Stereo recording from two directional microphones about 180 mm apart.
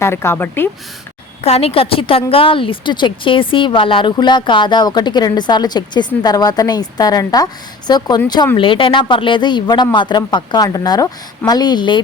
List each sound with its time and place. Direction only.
0.0 s a woman's voice: 15° left (ahead or behind)
1.4 s a woman's voice: 35° left (ahead or behind)